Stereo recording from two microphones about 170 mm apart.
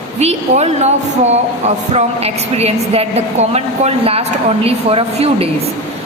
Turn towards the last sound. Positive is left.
turn(degrees=-35)  # may be behind; listen again after turning